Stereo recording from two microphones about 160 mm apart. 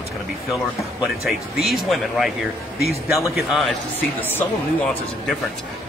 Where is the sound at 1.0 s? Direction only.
Centre (ahead or behind).